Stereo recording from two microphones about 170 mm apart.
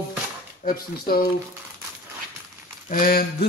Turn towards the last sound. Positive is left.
turn(degrees=55)  # may be behind; listen again after turning